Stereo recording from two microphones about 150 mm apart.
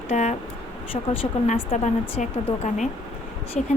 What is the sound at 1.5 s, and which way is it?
A woman's voice, 45° left (ahead or behind).